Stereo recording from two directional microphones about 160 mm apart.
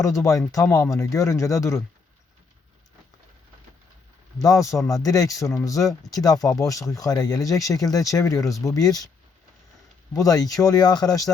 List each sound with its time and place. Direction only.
0.0 s speech: 20° left (ahead or behind)
4.4 s speech: 20° left (ahead or behind)
10.2 s speech: 20° left (ahead or behind)